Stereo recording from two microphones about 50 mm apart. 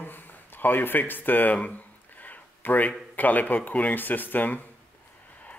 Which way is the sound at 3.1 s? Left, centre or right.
Left.